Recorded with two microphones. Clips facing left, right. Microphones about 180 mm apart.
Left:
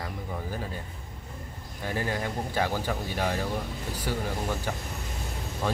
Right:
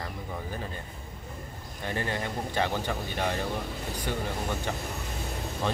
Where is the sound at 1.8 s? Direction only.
5° left (ahead or behind).